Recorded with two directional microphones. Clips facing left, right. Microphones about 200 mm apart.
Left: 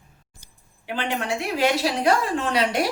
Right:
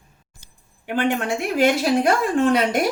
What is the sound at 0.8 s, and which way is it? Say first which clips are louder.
Speech: right 5 dB; 50° right (ahead or behind).